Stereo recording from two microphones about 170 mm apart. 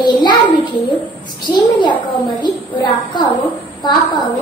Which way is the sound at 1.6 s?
25° left (ahead or behind).